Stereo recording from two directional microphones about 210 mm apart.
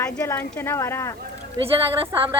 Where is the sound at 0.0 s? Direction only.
10° left (ahead or behind).